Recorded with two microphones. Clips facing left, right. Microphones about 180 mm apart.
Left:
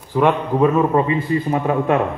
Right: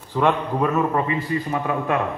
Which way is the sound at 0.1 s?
15° left (ahead or behind).